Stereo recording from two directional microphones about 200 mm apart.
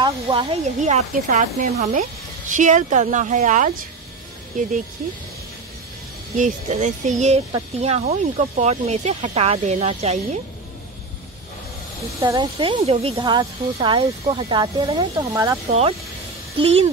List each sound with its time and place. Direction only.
0.0 s speech: 25° right (ahead or behind)
6.3 s speech: 35° right (ahead or behind)
12.2 s speech: 20° right (ahead or behind)
16.5 s speech: 30° right (ahead or behind)